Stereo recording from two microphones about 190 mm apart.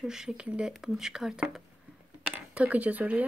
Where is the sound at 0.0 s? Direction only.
5° right (ahead or behind).